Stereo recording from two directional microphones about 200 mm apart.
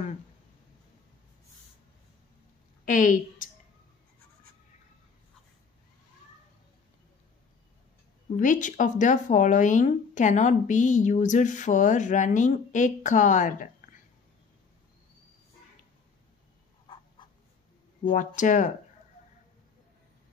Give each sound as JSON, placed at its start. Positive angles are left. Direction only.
{"t": 2.8, "sound": "a woman's voice", "side_deg": 40}
{"t": 8.4, "sound": "speech", "side_deg": 40}
{"t": 16.8, "sound": "frog", "side_deg": 25}
{"t": 18.1, "sound": "speech", "side_deg": 40}